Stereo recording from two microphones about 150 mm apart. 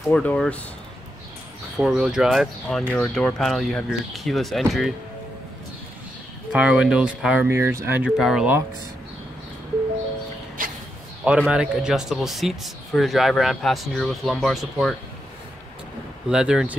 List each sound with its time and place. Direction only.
0.1 s speech: 10° left (ahead or behind)
1.8 s speech: 5° right (ahead or behind)
6.5 s speech: 5° right (ahead or behind)
7.4 s speech: 20° right (ahead or behind)
8.2 s speech: 5° right (ahead or behind)
10.6 s chicken: 70° right (ahead or behind)
11.3 s speech: 5° right (ahead or behind)
16.3 s speech: 5° right (ahead or behind)